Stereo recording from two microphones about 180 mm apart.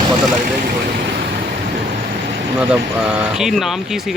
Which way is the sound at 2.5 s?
5° right (ahead or behind).